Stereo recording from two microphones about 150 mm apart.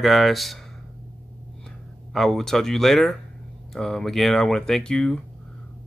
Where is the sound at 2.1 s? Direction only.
Centre (ahead or behind).